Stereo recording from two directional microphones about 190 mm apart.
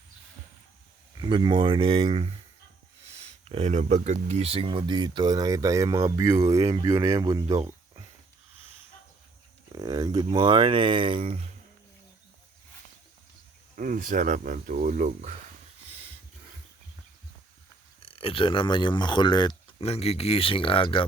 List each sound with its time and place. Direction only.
1.1 s speech: 25° right (ahead or behind)
9.7 s speech: 20° right (ahead or behind)
13.7 s speech: 45° right (ahead or behind)
18.0 s speech: 30° left (ahead or behind)